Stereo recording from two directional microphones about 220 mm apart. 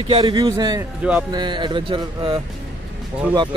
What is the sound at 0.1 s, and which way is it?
Speech, 20° right (ahead or behind).